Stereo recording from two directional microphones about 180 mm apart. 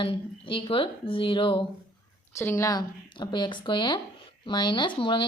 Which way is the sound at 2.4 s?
15° left (ahead or behind).